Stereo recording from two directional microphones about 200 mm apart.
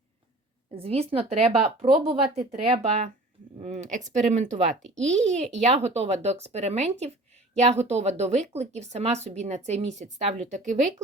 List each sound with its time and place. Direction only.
0.7 s a woman's voice: 30° right (ahead or behind)